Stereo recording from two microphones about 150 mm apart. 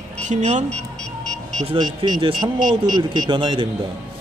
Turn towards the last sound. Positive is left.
turn(degrees=-30)  # may be behind; listen again after turning